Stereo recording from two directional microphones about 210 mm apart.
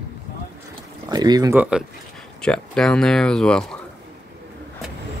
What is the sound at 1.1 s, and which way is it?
Speech, 20° right (ahead or behind).